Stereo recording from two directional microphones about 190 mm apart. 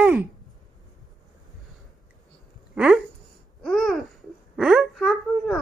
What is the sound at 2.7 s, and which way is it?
Speech, 5° right (ahead or behind).